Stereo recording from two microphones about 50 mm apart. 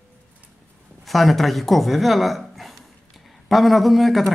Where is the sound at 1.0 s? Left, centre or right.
Centre.